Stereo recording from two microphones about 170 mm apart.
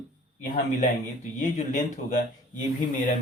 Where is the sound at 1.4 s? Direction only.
45° left (ahead or behind).